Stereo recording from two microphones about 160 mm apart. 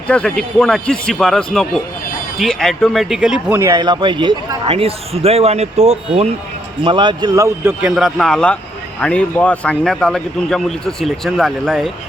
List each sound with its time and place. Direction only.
0.1 s speech: 5° left (ahead or behind)
3.6 s a man's voice: 25° right (ahead or behind); by 6.0 s 45° right (ahead or behind)
6.8 s a man's voice: 30° right (ahead or behind); by 11.9 s centre (ahead or behind)